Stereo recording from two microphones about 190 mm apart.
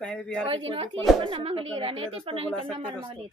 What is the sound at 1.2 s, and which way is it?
Speech, 30° right (ahead or behind).